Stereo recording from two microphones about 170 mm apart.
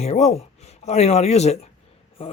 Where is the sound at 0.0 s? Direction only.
40° left (ahead or behind).